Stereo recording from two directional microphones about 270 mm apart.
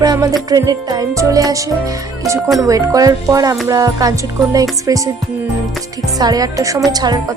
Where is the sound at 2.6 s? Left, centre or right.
Centre.